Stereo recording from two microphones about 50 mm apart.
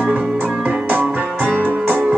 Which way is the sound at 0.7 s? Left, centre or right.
Right.